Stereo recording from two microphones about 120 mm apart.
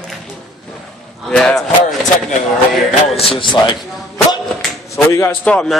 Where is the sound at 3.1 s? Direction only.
50° left (ahead or behind).